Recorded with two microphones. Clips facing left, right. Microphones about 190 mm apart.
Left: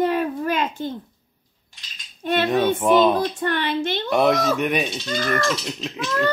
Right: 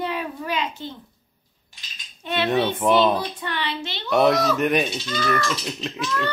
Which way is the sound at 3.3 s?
45° left (ahead or behind).